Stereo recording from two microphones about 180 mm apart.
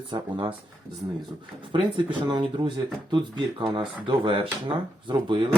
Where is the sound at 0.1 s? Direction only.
25° right (ahead or behind).